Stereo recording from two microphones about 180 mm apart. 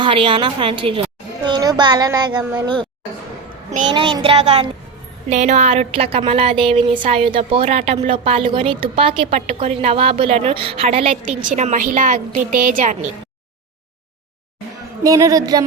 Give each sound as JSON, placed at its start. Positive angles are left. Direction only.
{"t": 0.0, "sound": "a woman's voice", "side_deg": -30}
{"t": 3.8, "sound": "speech", "side_deg": -25}
{"t": 11.3, "sound": "a woman's voice", "side_deg": -40}
{"t": 15.0, "sound": "a woman's voice", "side_deg": -20}